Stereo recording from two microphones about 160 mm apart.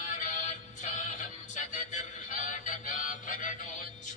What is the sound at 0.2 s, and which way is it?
Music, 50° left (ahead or behind).